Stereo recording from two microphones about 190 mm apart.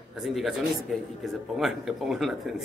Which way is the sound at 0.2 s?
Centre (ahead or behind).